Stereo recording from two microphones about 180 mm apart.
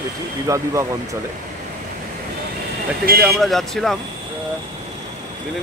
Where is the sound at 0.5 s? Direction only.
20° right (ahead or behind).